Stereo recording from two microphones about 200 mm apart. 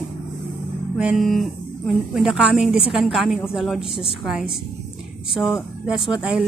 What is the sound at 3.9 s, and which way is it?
Speech, 25° left (ahead or behind).